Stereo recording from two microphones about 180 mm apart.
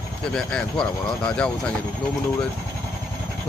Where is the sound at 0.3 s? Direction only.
5° left (ahead or behind).